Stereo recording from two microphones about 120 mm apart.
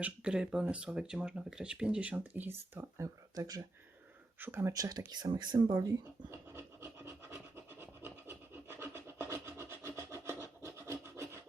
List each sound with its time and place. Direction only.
0.0 s speech: 10° right (ahead or behind); by 3.6 s 30° right (ahead or behind)
4.4 s speech: 20° right (ahead or behind)
4.7 s speech: 30° right (ahead or behind)
6.5 s rub: 20° right (ahead or behind)